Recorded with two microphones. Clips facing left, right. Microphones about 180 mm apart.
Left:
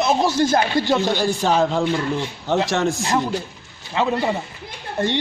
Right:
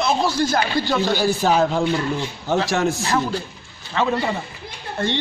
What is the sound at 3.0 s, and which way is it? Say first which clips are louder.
Speech: left 1 dB; 15° left (ahead or behind).